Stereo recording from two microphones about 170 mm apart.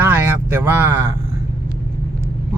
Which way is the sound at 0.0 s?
15° right (ahead or behind).